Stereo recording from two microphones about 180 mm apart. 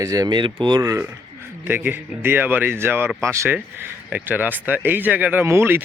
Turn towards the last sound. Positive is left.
turn(degrees=-10)  # may be behind; listen again after turning